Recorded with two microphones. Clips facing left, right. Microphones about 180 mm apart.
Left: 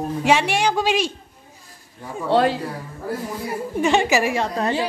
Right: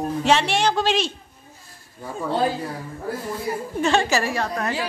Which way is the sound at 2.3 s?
75° left (ahead or behind).